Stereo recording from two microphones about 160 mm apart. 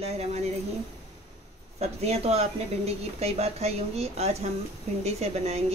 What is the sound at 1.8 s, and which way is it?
Speech, 40° right (ahead or behind).